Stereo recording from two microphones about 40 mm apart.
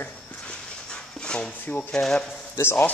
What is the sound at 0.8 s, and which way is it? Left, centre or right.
Dog, left.